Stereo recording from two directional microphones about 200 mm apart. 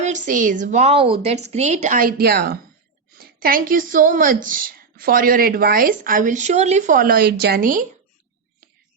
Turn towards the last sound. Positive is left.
turn(degrees=-40)  # may be behind; listen again after turning